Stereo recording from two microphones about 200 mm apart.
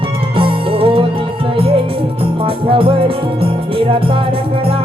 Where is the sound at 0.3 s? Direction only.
25° right (ahead or behind).